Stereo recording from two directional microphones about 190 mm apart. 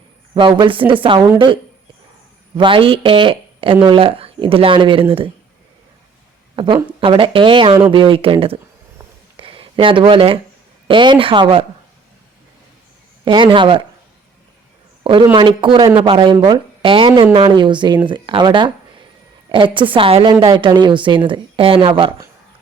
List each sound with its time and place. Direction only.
0.3 s a woman's voice: 25° right (ahead or behind)
2.6 s a woman's voice: 25° right (ahead or behind)
7.0 s a woman's voice: 25° right (ahead or behind)
13.2 s a woman's voice: 25° right (ahead or behind)
15.0 s a woman's voice: 25° right (ahead or behind)